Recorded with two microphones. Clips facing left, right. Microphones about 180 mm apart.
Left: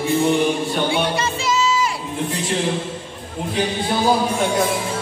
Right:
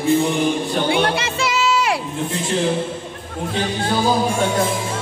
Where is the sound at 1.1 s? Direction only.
70° right (ahead or behind).